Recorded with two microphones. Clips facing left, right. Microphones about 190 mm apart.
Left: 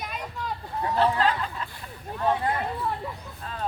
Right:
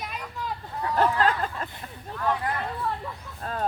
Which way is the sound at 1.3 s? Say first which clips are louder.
Right 1 dB; 45° right (ahead or behind).